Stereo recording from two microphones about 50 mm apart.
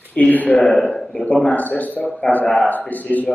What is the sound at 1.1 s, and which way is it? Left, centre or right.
A man's voice, left.